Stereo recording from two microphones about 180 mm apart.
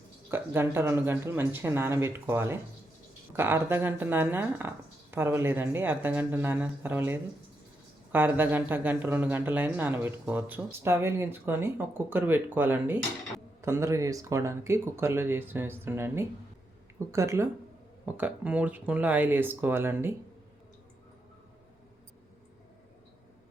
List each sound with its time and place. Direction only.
0.3 s speech: 10° right (ahead or behind)